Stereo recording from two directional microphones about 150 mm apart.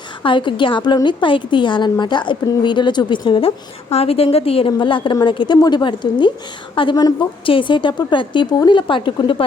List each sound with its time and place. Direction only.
0.2 s a woman's voice: 35° left (ahead or behind)